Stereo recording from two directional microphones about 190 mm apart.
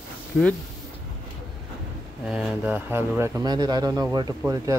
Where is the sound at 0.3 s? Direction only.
5° left (ahead or behind).